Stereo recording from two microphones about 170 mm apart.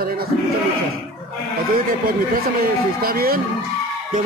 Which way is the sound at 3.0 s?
60° right (ahead or behind).